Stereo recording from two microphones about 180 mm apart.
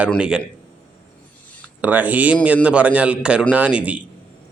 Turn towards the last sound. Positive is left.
turn(degrees=-5)  # may be behind; listen again after turning